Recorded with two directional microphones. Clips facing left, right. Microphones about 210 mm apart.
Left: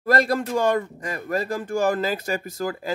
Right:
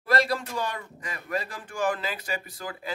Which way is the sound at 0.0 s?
45° left (ahead or behind).